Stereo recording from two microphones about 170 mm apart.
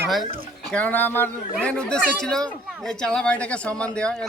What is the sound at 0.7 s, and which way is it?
Speech, 10° left (ahead or behind).